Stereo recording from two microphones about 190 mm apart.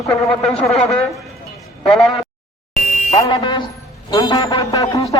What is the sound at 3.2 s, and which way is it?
A woman's voice, 25° left (ahead or behind).